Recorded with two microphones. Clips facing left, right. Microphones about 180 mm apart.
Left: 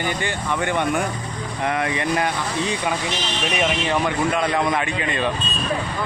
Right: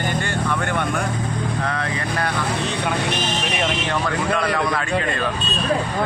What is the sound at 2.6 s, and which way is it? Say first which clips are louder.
Speech: left 1 dB; 65° right (ahead or behind).